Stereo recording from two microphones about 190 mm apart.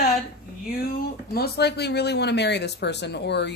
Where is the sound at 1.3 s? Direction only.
55° left (ahead or behind).